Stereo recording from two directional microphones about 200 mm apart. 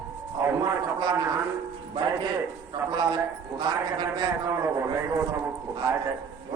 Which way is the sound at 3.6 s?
20° right (ahead or behind).